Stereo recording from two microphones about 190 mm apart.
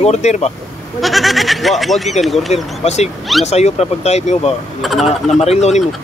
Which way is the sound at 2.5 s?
35° left (ahead or behind).